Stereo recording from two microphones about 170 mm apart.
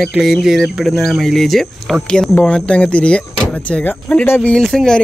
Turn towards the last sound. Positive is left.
turn(degrees=5)  # may be behind; listen again after turning